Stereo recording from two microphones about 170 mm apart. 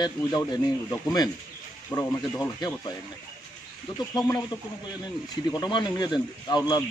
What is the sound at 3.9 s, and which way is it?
Speech, 20° left (ahead or behind).